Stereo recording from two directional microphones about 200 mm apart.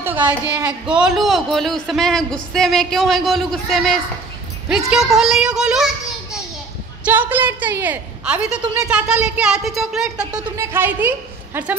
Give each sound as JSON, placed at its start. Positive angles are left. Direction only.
{"t": 0.0, "sound": "speech", "side_deg": -10}
{"t": 7.1, "sound": "a woman's voice", "side_deg": -10}